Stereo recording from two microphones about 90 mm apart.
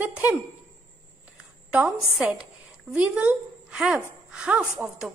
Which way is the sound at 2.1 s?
10° right (ahead or behind).